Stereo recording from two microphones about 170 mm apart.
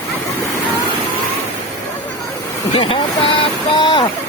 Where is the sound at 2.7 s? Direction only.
30° left (ahead or behind).